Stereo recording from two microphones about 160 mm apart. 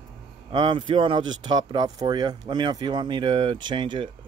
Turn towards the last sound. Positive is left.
turn(degrees=-30)  # may be behind; listen again after turning